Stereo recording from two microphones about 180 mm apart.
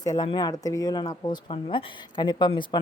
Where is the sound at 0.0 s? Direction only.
25° left (ahead or behind).